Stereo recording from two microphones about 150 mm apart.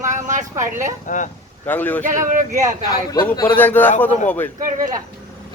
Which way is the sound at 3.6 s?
10° left (ahead or behind).